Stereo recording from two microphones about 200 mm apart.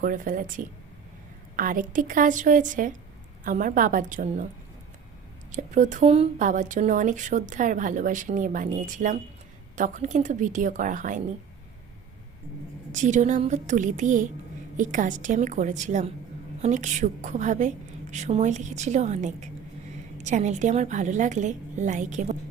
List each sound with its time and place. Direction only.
0.0 s speech: 40° right (ahead or behind)
5.5 s speech: 40° right (ahead or behind)
12.9 s speech: 40° right (ahead or behind)